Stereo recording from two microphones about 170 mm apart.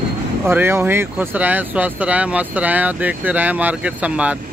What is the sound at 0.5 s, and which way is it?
Speech, 15° right (ahead or behind).